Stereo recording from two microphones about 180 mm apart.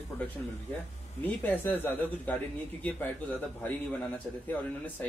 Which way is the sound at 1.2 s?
10° left (ahead or behind).